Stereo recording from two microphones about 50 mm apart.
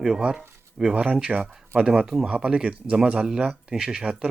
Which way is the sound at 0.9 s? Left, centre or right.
Right.